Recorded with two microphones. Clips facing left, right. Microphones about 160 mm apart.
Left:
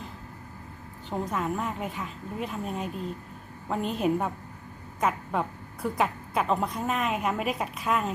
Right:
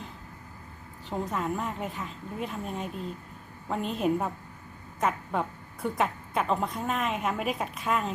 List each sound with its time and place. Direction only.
1.3 s a woman's voice: centre (ahead or behind)